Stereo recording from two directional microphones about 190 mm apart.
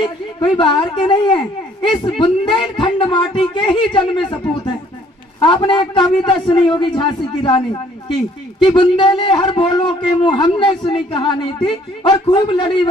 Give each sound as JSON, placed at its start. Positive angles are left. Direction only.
{"t": 0.0, "sound": "speech", "side_deg": 25}